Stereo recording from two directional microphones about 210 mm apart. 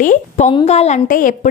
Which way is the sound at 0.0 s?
40° left (ahead or behind).